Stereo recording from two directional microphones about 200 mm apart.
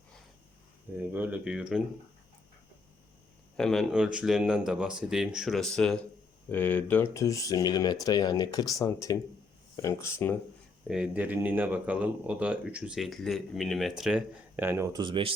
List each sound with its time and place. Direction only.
1.1 s speech: 10° right (ahead or behind)
3.6 s speech: centre (ahead or behind)
10.8 s speech: 5° right (ahead or behind)
15.0 s speech: 25° right (ahead or behind)